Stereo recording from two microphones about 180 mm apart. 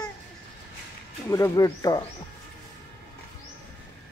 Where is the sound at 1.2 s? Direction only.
15° left (ahead or behind).